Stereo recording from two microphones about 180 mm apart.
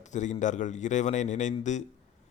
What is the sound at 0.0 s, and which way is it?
Speech, 40° left (ahead or behind).